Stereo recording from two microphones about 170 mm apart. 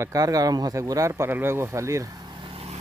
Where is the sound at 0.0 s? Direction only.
20° right (ahead or behind).